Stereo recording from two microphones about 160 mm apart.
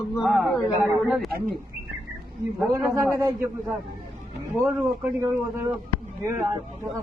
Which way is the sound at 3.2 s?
20° right (ahead or behind).